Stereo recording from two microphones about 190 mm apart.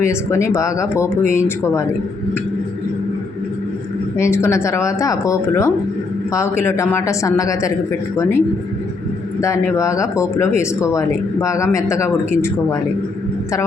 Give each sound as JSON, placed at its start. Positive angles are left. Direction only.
{"t": 0.0, "sound": "speech", "side_deg": 15}
{"t": 4.2, "sound": "speech", "side_deg": 15}
{"t": 9.4, "sound": "speech", "side_deg": 15}